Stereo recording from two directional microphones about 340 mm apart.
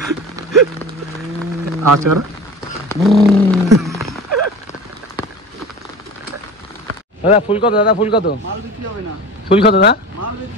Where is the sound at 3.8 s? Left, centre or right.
Centre.